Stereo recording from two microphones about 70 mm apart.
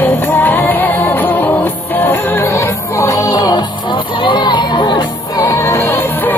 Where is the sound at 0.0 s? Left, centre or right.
Left.